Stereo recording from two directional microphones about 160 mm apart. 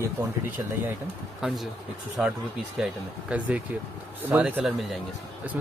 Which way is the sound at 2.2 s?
5° right (ahead or behind).